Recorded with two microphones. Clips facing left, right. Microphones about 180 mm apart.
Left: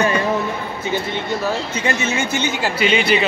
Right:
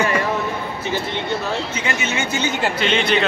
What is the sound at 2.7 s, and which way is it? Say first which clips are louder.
Speech: left 4 dB; 5° left (ahead or behind).